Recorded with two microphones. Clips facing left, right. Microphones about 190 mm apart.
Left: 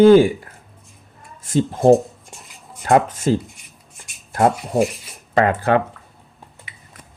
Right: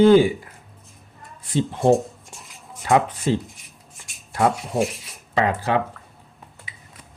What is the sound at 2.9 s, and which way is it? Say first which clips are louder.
Speech: left 3 dB; 55° left (ahead or behind).